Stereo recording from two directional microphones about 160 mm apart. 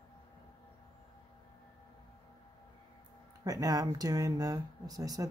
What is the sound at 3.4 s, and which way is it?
Speech, 25° right (ahead or behind).